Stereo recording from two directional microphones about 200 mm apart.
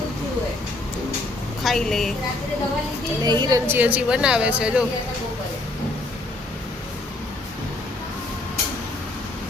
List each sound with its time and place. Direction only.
1.6 s a woman's voice: centre (ahead or behind)
3.2 s a woman's voice: 20° right (ahead or behind)
3.7 s a woman's voice: 10° right (ahead or behind)